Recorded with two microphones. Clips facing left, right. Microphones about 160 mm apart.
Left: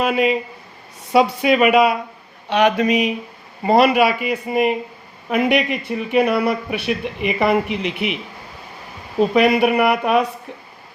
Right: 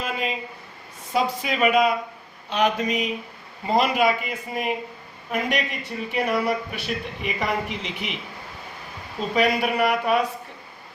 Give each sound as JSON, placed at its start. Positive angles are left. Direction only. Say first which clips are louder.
{"t": 0.0, "sound": "a woman's voice", "louder": "left 10 dB", "side_deg": 75}
{"t": 9.3, "sound": "speech", "louder": "left 5 dB", "side_deg": 65}